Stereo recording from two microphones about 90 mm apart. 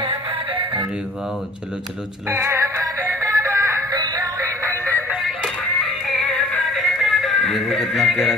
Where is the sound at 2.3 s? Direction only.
30° right (ahead or behind).